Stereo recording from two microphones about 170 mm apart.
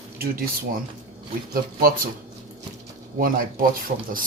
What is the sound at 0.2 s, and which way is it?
Speech, 60° right (ahead or behind).